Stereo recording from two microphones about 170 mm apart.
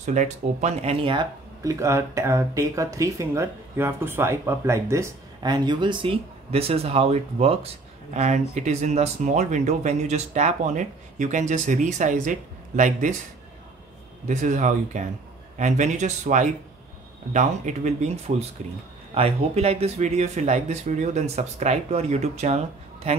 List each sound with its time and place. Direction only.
0.0 s speech: 45° right (ahead or behind)
1.0 s speech: 25° right (ahead or behind); by 13.1 s 50° right (ahead or behind)
14.2 s speech: 45° right (ahead or behind)